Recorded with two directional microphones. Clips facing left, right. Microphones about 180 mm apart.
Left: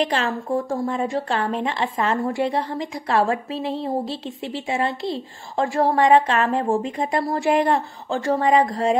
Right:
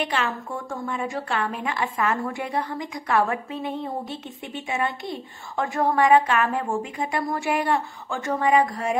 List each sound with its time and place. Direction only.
0.0 s a woman's voice: 35° left (ahead or behind)